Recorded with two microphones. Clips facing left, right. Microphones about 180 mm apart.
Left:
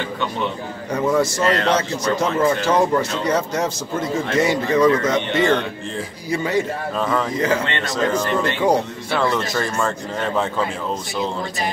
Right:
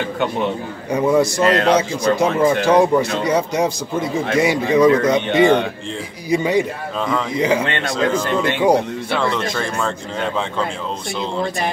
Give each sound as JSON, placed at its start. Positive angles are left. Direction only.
{"t": 0.9, "sound": "speech", "side_deg": -15}
{"t": 9.1, "sound": "speech", "side_deg": 0}